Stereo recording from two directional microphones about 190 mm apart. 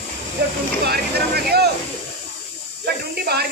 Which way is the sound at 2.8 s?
55° right (ahead or behind).